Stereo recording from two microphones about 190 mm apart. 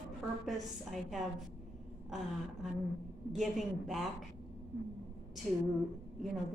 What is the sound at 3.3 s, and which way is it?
Speech, centre (ahead or behind).